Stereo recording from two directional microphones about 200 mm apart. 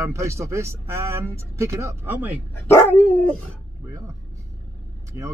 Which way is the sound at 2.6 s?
10° left (ahead or behind).